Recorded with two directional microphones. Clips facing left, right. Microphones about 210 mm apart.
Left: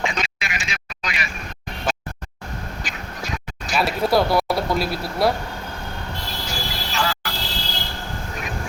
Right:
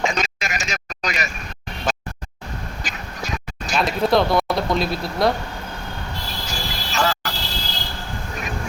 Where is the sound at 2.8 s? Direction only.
40° right (ahead or behind).